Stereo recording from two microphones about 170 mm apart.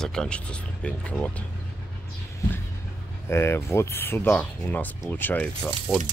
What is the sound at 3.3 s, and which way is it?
Speech, 15° left (ahead or behind).